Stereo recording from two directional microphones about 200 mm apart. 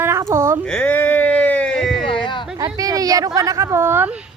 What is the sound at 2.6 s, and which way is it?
Speech, 20° right (ahead or behind).